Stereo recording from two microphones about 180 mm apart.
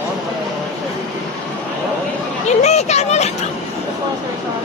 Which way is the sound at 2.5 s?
40° left (ahead or behind).